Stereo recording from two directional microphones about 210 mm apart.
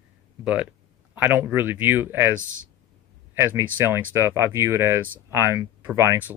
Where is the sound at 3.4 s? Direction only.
10° right (ahead or behind).